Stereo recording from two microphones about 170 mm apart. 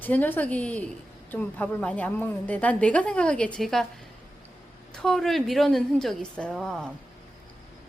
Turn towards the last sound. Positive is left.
turn(degrees=5)  # may be behind; listen again after turning